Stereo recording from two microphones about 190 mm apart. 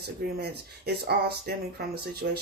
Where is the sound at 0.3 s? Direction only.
60° right (ahead or behind).